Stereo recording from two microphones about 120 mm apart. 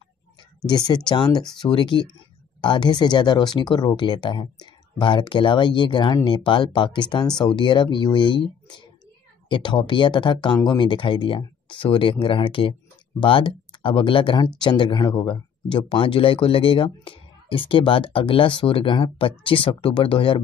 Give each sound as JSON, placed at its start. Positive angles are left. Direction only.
{"t": 0.7, "sound": "speech", "side_deg": 35}